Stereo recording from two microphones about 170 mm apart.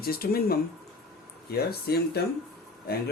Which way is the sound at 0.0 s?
65° left (ahead or behind).